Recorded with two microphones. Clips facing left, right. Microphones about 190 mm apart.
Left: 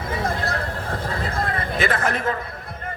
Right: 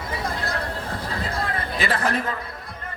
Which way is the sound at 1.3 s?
35° right (ahead or behind).